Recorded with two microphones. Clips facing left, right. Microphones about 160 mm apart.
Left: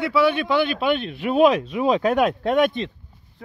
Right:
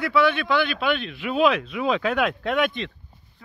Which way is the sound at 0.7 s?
45° left (ahead or behind).